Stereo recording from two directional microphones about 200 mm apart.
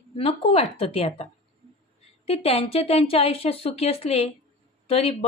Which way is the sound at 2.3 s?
30° left (ahead or behind).